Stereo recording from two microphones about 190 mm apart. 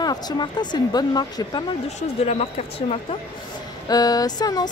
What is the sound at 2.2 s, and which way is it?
Speech, 35° left (ahead or behind).